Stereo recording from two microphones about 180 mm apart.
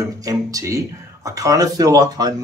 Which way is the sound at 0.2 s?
20° right (ahead or behind).